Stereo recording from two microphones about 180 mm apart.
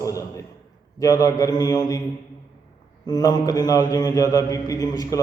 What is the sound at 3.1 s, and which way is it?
Mantra, 20° left (ahead or behind).